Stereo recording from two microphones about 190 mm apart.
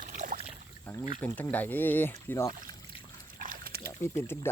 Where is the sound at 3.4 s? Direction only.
50° right (ahead or behind).